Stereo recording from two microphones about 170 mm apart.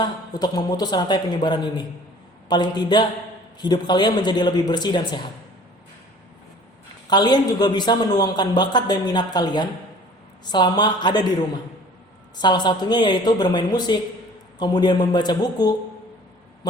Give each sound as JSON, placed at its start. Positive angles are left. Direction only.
{"t": 0.0, "sound": "a woman's voice", "side_deg": 25}
{"t": 7.1, "sound": "a woman's voice", "side_deg": 25}
{"t": 12.4, "sound": "a woman's voice", "side_deg": 25}